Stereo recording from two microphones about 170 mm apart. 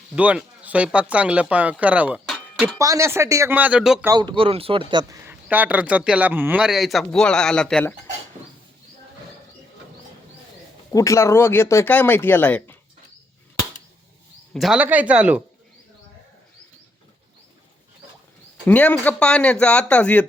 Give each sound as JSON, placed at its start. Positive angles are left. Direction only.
{"t": 0.2, "sound": "speech", "side_deg": -10}
{"t": 2.7, "sound": "speech", "side_deg": -20}
{"t": 4.0, "sound": "speech", "side_deg": -25}
{"t": 5.3, "sound": "a man's voice", "side_deg": -10}
{"t": 10.9, "sound": "speech", "side_deg": 20}
{"t": 14.5, "sound": "speech", "side_deg": 0}
{"t": 18.6, "sound": "speech", "side_deg": 10}